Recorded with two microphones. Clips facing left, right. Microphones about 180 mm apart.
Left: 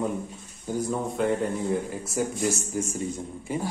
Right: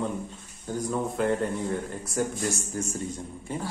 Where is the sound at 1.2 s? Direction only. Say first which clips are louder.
Left 1 dB; centre (ahead or behind).